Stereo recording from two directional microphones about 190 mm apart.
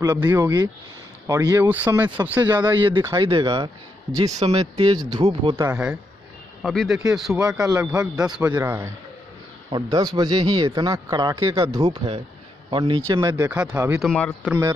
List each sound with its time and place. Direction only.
0.0 s a man's voice: 20° right (ahead or behind)
5.7 s speech: 5° right (ahead or behind)
7.3 s a man's voice: 15° right (ahead or behind)
8.3 s a man's voice: 10° right (ahead or behind)
13.5 s a man's voice: 5° right (ahead or behind)
14.0 s speech: 5° left (ahead or behind)
14.4 s a man's voice: 10° right (ahead or behind)